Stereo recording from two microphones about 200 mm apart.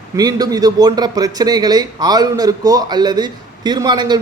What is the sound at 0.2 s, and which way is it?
A man's voice, 20° right (ahead or behind).